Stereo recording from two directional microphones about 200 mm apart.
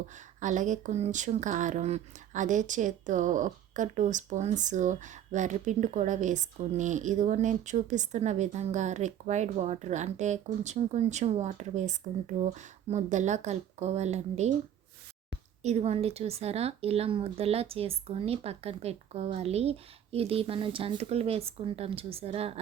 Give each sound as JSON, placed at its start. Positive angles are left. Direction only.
{"t": 0.3, "sound": "speech", "side_deg": -40}
{"t": 15.6, "sound": "speech", "side_deg": -35}